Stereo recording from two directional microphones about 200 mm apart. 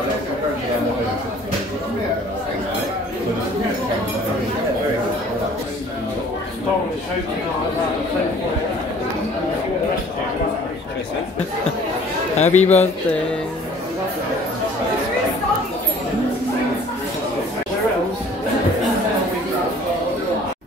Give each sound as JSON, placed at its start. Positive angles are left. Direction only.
{"t": 12.4, "sound": "a man's voice", "side_deg": 35}